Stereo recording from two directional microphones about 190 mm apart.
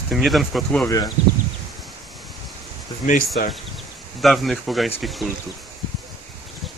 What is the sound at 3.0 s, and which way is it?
Speech, 45° left (ahead or behind).